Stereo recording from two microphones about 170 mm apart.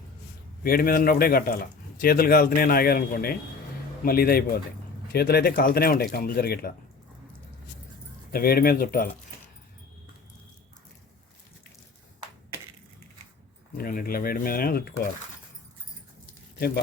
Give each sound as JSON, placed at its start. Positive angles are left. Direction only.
{"t": 0.6, "sound": "speech", "side_deg": 60}
{"t": 8.3, "sound": "speech", "side_deg": 60}
{"t": 13.7, "sound": "speech", "side_deg": 60}
{"t": 16.6, "sound": "speech", "side_deg": 65}